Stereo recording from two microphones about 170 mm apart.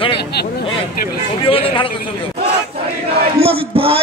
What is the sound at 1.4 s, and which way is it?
Speech, 30° left (ahead or behind).